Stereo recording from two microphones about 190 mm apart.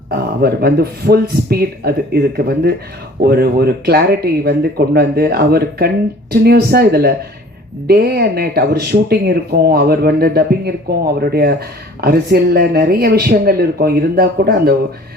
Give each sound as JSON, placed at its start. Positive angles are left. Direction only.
{"t": 0.1, "sound": "speech", "side_deg": -55}